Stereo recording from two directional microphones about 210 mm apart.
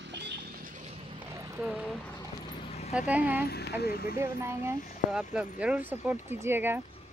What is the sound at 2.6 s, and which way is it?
Vehicle, 30° left (ahead or behind).